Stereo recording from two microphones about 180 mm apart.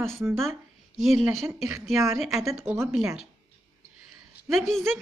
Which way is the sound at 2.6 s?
10° right (ahead or behind).